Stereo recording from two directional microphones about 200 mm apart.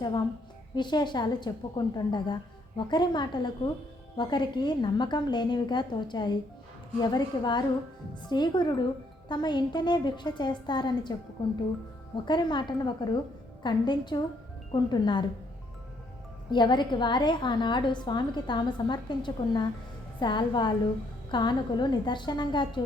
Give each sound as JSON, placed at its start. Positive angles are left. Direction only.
{"t": 0.8, "sound": "a woman's voice", "side_deg": 20}
{"t": 12.1, "sound": "a woman's voice", "side_deg": 20}
{"t": 16.5, "sound": "a woman's voice", "side_deg": 20}